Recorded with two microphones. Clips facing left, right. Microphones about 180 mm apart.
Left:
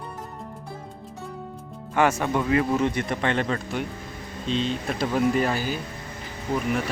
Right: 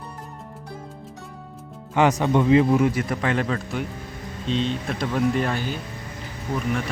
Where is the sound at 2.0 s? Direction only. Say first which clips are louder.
Right 3 dB; 15° right (ahead or behind).